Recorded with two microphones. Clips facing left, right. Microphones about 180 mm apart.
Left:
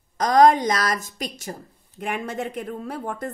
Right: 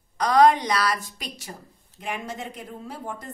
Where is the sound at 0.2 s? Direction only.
45° left (ahead or behind).